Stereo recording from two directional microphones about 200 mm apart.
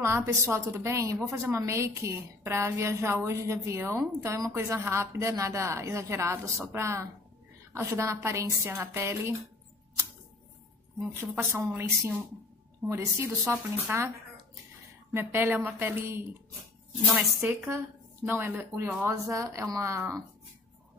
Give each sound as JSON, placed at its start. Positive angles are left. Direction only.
{"t": 0.0, "sound": "a woman's voice", "side_deg": -15}
{"t": 11.1, "sound": "a woman's voice", "side_deg": -10}
{"t": 15.1, "sound": "a woman's voice", "side_deg": -10}